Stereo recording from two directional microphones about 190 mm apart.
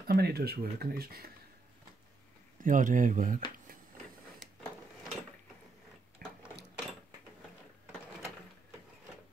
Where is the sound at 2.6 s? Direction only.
45° right (ahead or behind).